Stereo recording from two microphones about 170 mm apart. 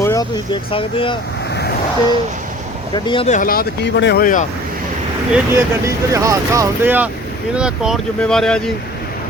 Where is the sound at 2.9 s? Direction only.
30° left (ahead or behind).